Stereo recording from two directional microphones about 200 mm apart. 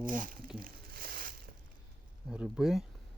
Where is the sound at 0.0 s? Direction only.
40° right (ahead or behind).